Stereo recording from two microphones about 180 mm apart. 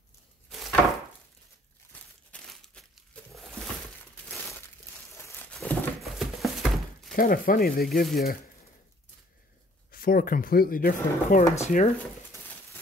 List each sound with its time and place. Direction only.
0.5 s chopping: centre (ahead or behind)
1.9 s crumpling: 5° left (ahead or behind)
5.5 s a sound: 5° left (ahead or behind)
7.2 s speech: 50° left (ahead or behind)
9.8 s speech: 55° left (ahead or behind)